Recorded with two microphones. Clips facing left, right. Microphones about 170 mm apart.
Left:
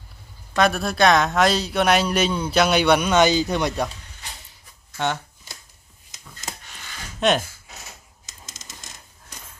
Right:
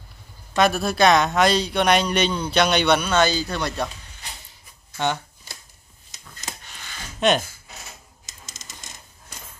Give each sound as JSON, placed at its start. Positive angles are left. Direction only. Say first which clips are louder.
{"t": 0.6, "sound": "speech", "louder": "even", "side_deg": 0}
{"t": 4.9, "sound": "speech", "louder": "right 1 dB", "side_deg": 0}
{"t": 7.2, "sound": "speech", "louder": "even", "side_deg": 0}